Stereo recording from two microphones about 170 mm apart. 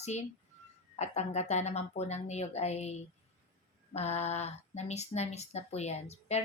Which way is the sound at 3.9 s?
40° left (ahead or behind).